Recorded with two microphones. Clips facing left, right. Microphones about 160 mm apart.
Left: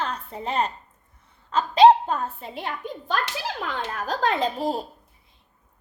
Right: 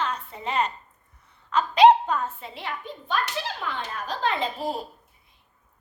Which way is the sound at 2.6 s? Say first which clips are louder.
Left 3 dB; 45° left (ahead or behind).